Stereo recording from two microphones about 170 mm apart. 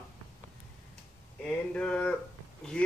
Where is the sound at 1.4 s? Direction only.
5° left (ahead or behind).